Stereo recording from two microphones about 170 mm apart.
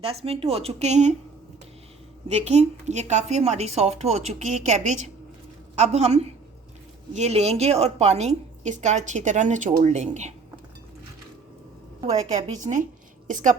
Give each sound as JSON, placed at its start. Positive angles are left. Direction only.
{"t": 0.0, "sound": "speech", "side_deg": -35}
{"t": 2.3, "sound": "a woman's voice", "side_deg": -40}
{"t": 12.0, "sound": "a woman's voice", "side_deg": -45}